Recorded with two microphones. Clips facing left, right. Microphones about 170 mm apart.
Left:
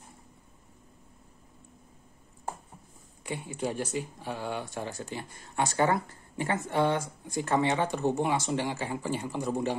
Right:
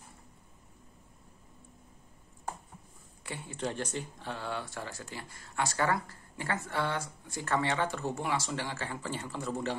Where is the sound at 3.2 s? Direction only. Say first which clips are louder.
Left 4 dB; 15° left (ahead or behind).